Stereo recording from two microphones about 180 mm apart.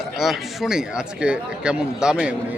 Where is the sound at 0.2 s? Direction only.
Centre (ahead or behind).